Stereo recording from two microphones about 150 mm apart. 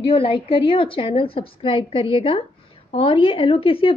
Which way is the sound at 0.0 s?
35° left (ahead or behind).